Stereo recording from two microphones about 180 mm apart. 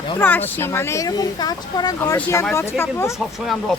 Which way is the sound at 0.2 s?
10° left (ahead or behind).